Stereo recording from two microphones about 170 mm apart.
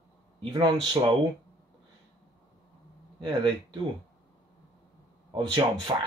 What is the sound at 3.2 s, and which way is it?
Speech, 25° right (ahead or behind).